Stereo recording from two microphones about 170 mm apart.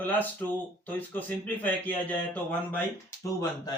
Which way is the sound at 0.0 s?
10° left (ahead or behind).